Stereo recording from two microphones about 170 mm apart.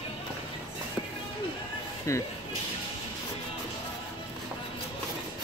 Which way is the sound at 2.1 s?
20° left (ahead or behind).